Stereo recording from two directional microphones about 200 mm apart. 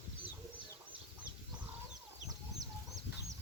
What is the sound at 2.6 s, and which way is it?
Chicken, 20° right (ahead or behind).